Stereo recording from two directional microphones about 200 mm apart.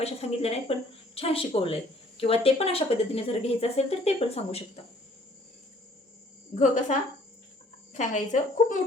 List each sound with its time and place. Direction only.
0.0 s speech: 30° left (ahead or behind)
6.6 s a woman's voice: 40° left (ahead or behind)